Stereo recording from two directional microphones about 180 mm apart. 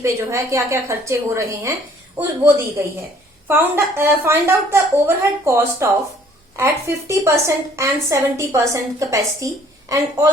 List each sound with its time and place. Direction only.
0.0 s a woman's voice: 15° right (ahead or behind)